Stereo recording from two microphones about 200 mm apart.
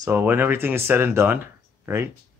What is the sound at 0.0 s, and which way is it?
Speech, 10° right (ahead or behind).